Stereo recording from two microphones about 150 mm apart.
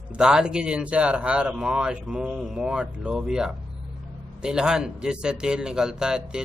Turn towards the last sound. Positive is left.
turn(degrees=-5)  # may be behind; listen again after turning